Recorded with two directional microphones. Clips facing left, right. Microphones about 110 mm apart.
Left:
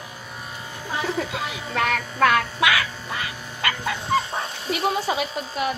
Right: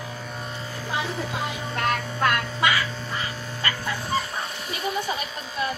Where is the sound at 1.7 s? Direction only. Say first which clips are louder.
Left 3 dB; 90° left.